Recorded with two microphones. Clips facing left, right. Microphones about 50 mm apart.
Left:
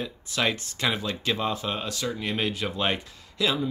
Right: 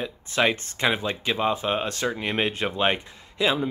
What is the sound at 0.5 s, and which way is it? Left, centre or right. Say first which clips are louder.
Speech: even; right.